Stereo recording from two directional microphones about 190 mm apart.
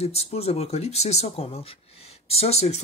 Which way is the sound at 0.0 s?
35° left (ahead or behind).